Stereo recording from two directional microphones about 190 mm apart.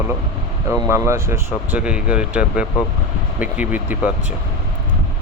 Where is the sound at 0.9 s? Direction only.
15° right (ahead or behind).